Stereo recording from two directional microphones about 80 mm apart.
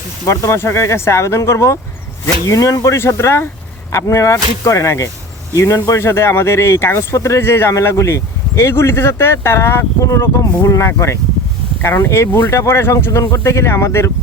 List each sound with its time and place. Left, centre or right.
0.3 s speech: left